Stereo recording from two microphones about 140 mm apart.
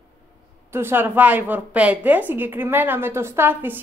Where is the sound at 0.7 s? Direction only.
15° right (ahead or behind).